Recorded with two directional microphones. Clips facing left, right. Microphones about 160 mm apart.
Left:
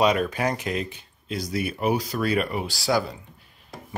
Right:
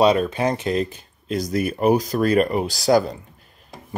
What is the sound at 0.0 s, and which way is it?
Speech, 25° right (ahead or behind).